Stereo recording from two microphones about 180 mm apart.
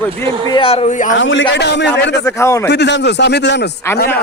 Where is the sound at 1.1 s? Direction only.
90° left.